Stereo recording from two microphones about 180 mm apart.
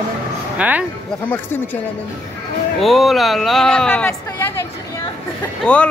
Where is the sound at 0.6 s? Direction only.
5° right (ahead or behind).